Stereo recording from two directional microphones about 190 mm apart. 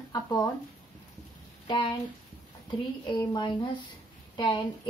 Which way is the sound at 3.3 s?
25° left (ahead or behind).